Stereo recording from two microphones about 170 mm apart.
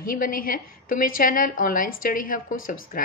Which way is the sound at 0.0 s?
55° left (ahead or behind).